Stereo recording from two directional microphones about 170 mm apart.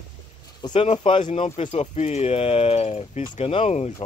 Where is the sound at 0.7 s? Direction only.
35° left (ahead or behind).